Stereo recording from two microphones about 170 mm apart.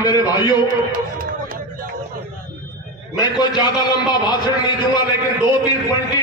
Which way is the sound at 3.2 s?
25° left (ahead or behind).